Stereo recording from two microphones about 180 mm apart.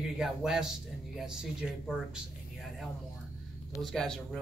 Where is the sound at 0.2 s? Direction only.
5° right (ahead or behind).